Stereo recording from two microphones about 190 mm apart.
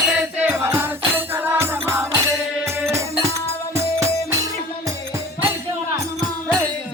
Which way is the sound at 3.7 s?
15° right (ahead or behind).